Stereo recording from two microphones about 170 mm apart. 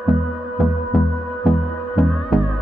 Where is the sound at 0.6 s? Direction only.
Centre (ahead or behind).